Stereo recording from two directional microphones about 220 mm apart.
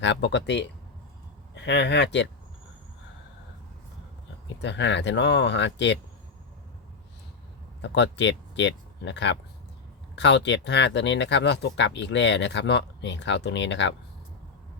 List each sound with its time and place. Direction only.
0.0 s speech: 50° left (ahead or behind)
4.6 s speech: 55° left (ahead or behind)
7.8 s speech: 55° left (ahead or behind)